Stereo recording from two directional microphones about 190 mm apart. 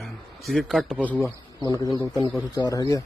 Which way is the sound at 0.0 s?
Centre (ahead or behind).